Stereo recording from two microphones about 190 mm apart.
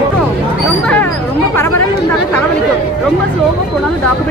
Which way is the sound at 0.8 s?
5° left (ahead or behind).